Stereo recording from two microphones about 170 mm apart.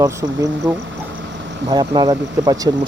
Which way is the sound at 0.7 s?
20° right (ahead or behind).